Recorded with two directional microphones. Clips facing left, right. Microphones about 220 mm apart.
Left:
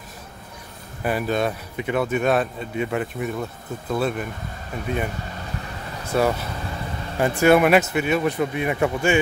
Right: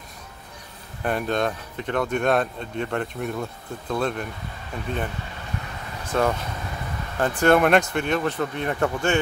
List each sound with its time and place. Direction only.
1.0 s speech: 5° left (ahead or behind)
6.0 s speech: 10° left (ahead or behind)